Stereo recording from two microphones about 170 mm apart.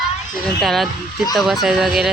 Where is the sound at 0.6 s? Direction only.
Centre (ahead or behind).